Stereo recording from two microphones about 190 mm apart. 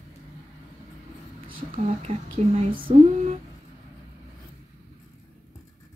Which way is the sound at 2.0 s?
35° right (ahead or behind).